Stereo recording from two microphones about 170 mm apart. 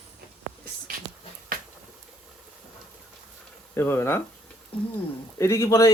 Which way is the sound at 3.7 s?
15° left (ahead or behind).